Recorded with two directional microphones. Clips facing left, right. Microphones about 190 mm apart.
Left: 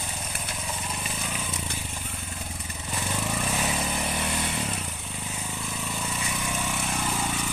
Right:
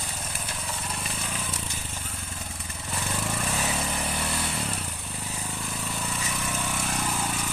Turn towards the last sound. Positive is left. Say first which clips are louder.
# left 1 dB
turn(degrees=10)  # may be behind; listen again after turning